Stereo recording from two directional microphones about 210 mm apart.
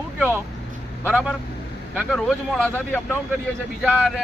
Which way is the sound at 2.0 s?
Centre (ahead or behind).